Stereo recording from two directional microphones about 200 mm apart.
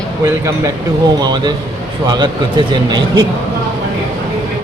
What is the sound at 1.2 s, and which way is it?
Speech, 20° right (ahead or behind).